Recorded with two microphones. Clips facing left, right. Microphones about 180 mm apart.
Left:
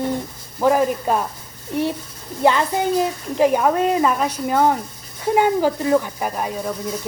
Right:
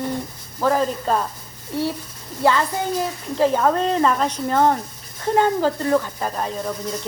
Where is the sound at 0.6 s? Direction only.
15° left (ahead or behind).